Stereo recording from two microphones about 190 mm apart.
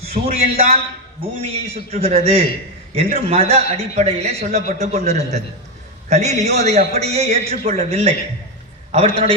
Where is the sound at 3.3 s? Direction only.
30° right (ahead or behind).